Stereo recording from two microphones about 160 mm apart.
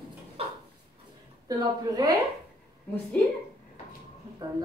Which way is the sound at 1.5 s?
25° right (ahead or behind).